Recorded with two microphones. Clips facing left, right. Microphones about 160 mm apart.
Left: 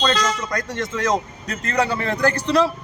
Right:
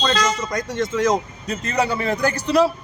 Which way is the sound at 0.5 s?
10° right (ahead or behind).